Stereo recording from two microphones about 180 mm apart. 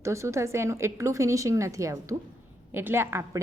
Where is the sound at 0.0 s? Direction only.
15° right (ahead or behind).